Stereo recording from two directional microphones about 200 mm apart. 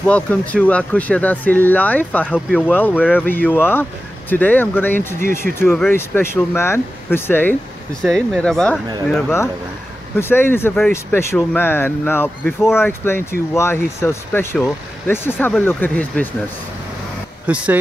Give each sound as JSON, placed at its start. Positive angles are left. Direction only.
{"t": 0.0, "sound": "speech", "side_deg": 5}
{"t": 5.2, "sound": "speech", "side_deg": -45}
{"t": 5.6, "sound": "speech", "side_deg": 10}
{"t": 10.1, "sound": "speech", "side_deg": 10}
{"t": 17.5, "sound": "speech", "side_deg": -5}